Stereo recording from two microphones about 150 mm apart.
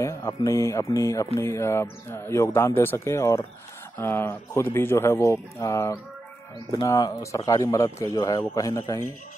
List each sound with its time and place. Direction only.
0.0 s speech: 25° left (ahead or behind)